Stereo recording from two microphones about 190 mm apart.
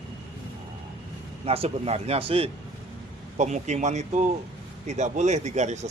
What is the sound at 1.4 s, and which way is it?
Speech, 30° right (ahead or behind).